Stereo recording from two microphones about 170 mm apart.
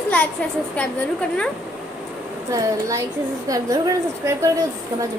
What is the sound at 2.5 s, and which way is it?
Speech, 20° right (ahead or behind).